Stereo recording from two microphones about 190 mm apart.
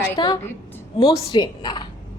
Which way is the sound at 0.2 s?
25° left (ahead or behind).